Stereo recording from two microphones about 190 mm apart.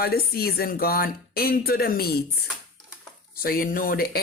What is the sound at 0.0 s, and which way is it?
Speech, 55° left (ahead or behind).